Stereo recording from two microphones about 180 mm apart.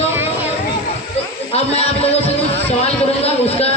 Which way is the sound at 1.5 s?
35° left (ahead or behind).